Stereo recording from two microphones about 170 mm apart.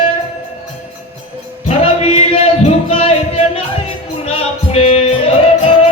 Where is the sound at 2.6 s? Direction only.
35° left (ahead or behind).